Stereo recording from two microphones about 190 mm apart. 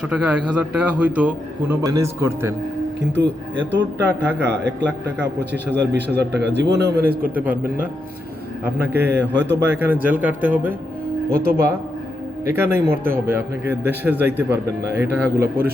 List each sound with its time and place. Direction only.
0.1 s a man's voice: 5° right (ahead or behind)
3.1 s a man's voice: 75° right (ahead or behind); by 7.0 s 60° right (ahead or behind)
7.3 s a man's voice: 10° right (ahead or behind)
8.8 s speech: 60° right (ahead or behind)
9.6 s a man's voice: 10° right (ahead or behind)
11.3 s speech: 50° right (ahead or behind)
12.5 s a man's voice: 15° right (ahead or behind)